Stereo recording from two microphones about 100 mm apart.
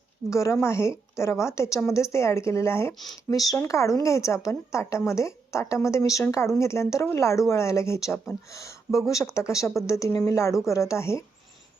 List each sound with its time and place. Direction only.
0.3 s a woman's voice: 30° left (ahead or behind)